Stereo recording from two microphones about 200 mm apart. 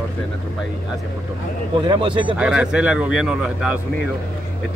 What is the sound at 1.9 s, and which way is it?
Speech, 25° right (ahead or behind).